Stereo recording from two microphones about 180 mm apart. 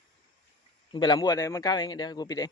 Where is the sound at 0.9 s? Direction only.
25° left (ahead or behind).